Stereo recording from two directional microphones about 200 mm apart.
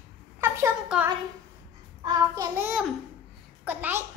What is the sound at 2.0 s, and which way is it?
Child singing, 20° right (ahead or behind).